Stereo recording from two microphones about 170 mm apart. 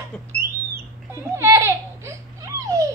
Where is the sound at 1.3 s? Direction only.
15° right (ahead or behind).